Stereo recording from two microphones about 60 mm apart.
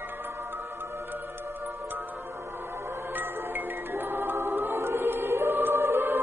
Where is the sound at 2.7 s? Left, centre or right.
Right.